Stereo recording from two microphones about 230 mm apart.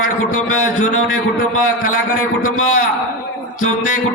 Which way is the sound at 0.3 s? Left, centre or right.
Left.